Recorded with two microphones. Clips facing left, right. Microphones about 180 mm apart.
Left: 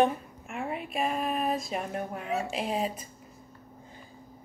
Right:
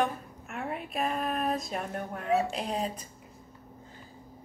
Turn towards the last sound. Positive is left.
turn(degrees=5)  # may be behind; listen again after turning